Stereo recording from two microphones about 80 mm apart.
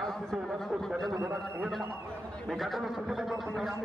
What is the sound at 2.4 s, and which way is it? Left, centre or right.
Speech, centre.